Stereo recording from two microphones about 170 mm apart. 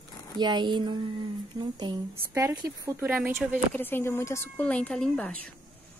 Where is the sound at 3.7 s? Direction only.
10° left (ahead or behind).